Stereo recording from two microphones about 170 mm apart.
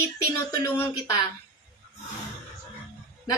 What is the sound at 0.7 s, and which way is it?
Speech, 15° left (ahead or behind).